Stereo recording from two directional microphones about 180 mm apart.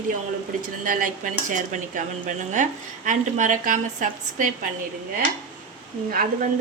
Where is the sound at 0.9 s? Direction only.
50° right (ahead or behind).